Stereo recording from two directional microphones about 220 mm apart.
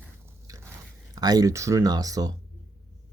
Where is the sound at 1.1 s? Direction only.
15° right (ahead or behind).